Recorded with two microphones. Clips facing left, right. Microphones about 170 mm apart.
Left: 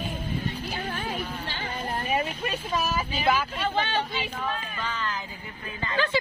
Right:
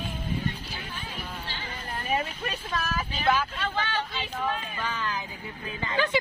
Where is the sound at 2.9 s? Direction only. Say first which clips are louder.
Right 1 dB; 10° left (ahead or behind).